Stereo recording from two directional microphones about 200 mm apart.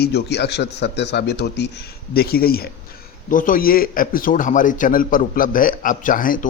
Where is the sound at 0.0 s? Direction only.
55° left (ahead or behind).